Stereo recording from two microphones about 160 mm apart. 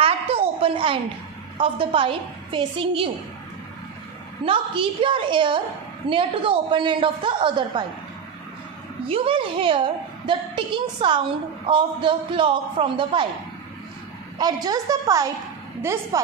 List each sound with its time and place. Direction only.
0.0 s a sound: 35° right (ahead or behind)
1.6 s a woman's voice: 35° right (ahead or behind)
4.5 s a woman's voice: 35° right (ahead or behind)
9.0 s a woman's voice: 35° right (ahead or behind)
14.4 s a woman's voice: 25° right (ahead or behind)